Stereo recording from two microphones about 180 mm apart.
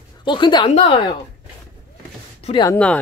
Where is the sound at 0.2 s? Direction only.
25° left (ahead or behind).